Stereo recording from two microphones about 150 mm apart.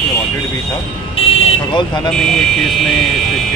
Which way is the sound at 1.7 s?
30° left (ahead or behind).